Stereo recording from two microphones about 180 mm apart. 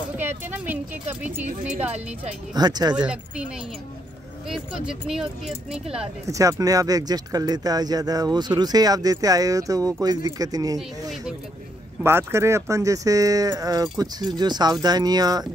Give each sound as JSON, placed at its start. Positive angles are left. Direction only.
{"t": 0.2, "sound": "speech", "side_deg": -10}
{"t": 2.5, "sound": "speech", "side_deg": -20}
{"t": 3.0, "sound": "speech", "side_deg": -5}
{"t": 4.5, "sound": "speech", "side_deg": -5}
{"t": 6.2, "sound": "speech", "side_deg": -20}